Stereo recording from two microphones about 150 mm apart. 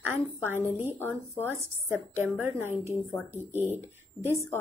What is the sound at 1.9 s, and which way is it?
Speech, 15° right (ahead or behind).